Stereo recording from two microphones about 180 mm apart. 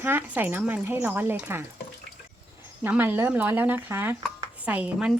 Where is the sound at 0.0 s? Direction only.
10° right (ahead or behind).